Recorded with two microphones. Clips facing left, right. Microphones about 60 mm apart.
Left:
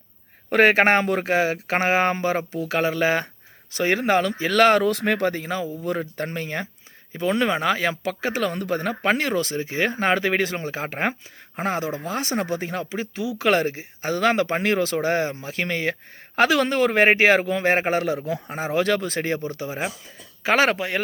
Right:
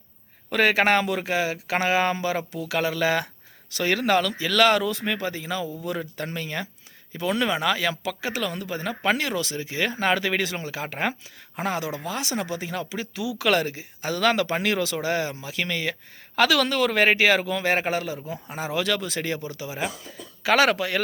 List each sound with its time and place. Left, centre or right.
0.5 s speech: left
4.9 s speech: left